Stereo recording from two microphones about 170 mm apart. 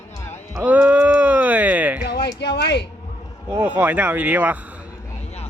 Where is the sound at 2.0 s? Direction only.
70° left (ahead or behind).